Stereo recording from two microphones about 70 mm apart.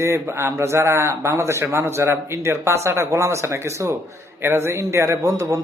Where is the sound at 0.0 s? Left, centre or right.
Right.